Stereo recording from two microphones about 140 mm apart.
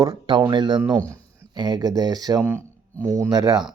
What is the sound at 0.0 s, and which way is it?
Speech, 30° right (ahead or behind).